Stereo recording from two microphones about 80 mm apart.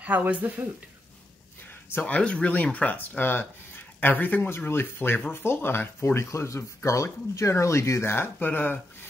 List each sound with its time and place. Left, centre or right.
0.0 s speech: centre
1.7 s speech: left